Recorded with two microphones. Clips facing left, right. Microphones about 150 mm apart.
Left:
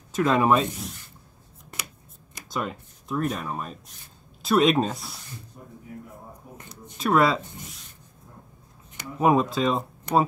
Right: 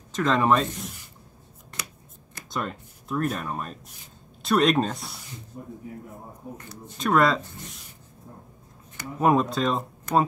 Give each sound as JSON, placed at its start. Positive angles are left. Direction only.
{"t": 0.1, "sound": "speech", "side_deg": 10}
{"t": 2.5, "sound": "speech", "side_deg": 0}
{"t": 5.5, "sound": "speech", "side_deg": -30}
{"t": 7.0, "sound": "speech", "side_deg": 5}
{"t": 9.2, "sound": "speech", "side_deg": 0}